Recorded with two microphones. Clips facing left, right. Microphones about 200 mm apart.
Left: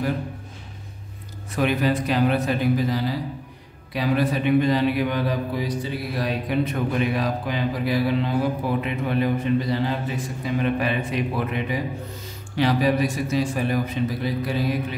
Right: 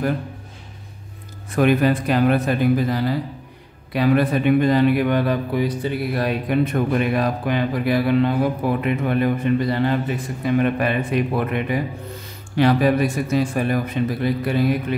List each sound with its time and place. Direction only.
1.5 s a man's voice: 50° right (ahead or behind)